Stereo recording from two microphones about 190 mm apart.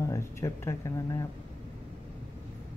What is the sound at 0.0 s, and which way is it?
Speech, 15° left (ahead or behind).